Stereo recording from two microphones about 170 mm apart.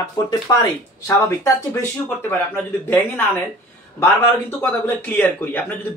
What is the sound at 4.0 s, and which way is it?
Speech, 15° left (ahead or behind).